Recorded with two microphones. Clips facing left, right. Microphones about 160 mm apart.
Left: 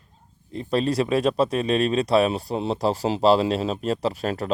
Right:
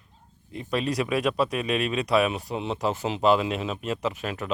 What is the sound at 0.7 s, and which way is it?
Speech, 30° left (ahead or behind).